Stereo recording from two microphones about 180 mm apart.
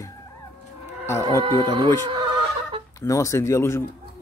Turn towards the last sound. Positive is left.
turn(degrees=15)  # may be behind; listen again after turning